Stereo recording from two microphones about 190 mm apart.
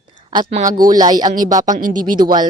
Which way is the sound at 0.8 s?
20° right (ahead or behind).